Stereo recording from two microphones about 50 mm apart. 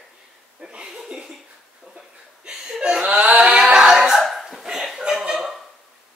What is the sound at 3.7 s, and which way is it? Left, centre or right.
Music, centre.